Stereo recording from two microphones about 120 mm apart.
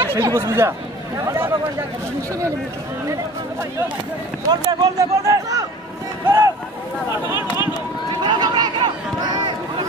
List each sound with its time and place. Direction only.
0.0 s speech: 20° right (ahead or behind)
4.5 s speech: 35° right (ahead or behind)
6.2 s boat: 20° right (ahead or behind)
7.1 s speech: 20° right (ahead or behind)
8.1 s a sound: 40° right (ahead or behind)